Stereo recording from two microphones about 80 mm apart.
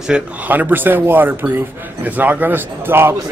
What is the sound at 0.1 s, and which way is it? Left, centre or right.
A man's voice, centre.